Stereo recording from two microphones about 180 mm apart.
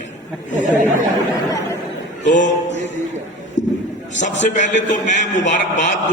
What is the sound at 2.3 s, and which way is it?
Music, 45° left (ahead or behind).